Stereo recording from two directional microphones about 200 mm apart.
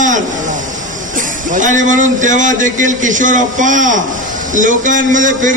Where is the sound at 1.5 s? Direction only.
40° right (ahead or behind).